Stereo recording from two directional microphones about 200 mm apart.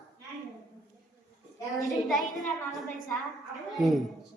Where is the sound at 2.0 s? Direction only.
Centre (ahead or behind).